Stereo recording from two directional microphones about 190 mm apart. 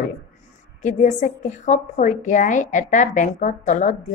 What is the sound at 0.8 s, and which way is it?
A woman's voice, 40° left (ahead or behind).